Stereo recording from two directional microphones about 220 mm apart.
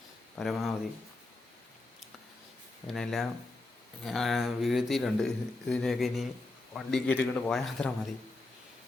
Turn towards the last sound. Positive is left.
turn(degrees=5)  # may be behind; listen again after turning